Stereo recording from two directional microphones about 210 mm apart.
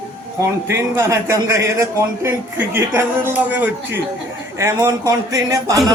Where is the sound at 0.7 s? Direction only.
15° right (ahead or behind).